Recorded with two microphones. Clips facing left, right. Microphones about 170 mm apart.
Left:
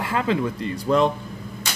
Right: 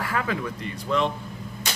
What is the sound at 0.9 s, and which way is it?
Speech, 40° left (ahead or behind).